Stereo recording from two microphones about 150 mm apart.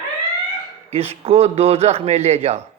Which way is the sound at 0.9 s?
40° right (ahead or behind).